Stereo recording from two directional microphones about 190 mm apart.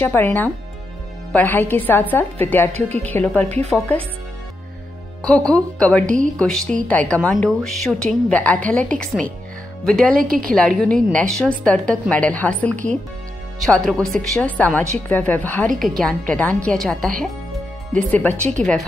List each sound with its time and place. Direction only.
0.0 s a woman's voice: 10° left (ahead or behind)
3.4 s speech: 35° right (ahead or behind)
5.2 s a woman's voice: 5° left (ahead or behind)